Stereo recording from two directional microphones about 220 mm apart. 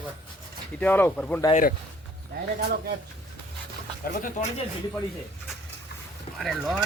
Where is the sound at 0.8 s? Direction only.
10° left (ahead or behind).